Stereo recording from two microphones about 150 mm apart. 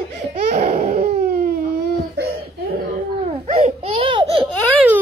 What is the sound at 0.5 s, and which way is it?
Baby cry, 45° right (ahead or behind).